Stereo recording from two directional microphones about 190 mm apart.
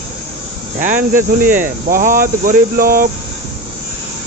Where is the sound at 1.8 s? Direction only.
45° right (ahead or behind).